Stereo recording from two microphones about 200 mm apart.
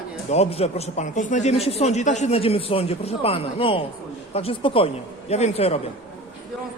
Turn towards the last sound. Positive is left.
turn(degrees=30)  # may be behind; listen again after turning